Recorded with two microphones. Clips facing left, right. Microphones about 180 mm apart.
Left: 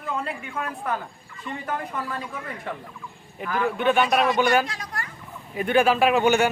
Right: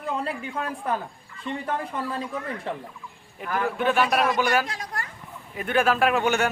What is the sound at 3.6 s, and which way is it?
Speech, centre (ahead or behind).